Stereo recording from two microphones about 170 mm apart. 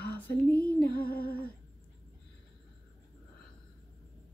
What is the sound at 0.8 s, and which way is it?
Music, 65° left (ahead or behind).